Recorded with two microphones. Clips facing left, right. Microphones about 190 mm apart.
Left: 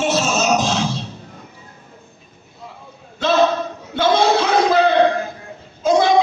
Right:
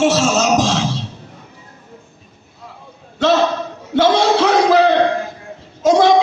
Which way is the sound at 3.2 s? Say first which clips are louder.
Right 1 dB; 75° right (ahead or behind).